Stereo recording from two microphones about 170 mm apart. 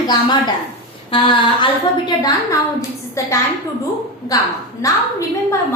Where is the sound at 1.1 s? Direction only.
30° left (ahead or behind).